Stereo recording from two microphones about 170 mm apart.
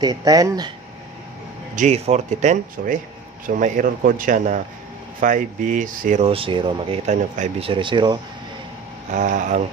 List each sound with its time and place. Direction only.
0.0 s speech: 20° right (ahead or behind)
1.8 s speech: 40° right (ahead or behind)
7.1 s speech: 40° right (ahead or behind)
9.1 s speech: 45° right (ahead or behind)